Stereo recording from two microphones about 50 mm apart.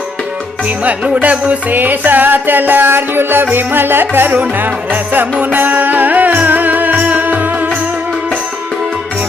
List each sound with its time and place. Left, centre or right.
0.9 s music: right